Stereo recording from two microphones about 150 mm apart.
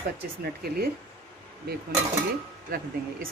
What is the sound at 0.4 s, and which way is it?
Speech, 90° right.